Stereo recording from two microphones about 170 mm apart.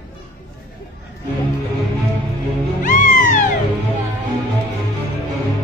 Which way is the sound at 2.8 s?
50° left (ahead or behind).